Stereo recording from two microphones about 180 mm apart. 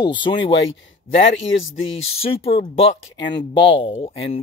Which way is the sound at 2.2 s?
35° left (ahead or behind).